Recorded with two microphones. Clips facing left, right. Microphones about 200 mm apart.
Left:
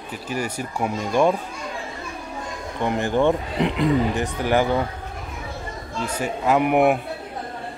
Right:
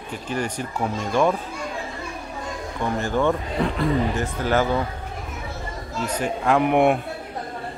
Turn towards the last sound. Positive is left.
turn(degrees=5)  # may be behind; listen again after turning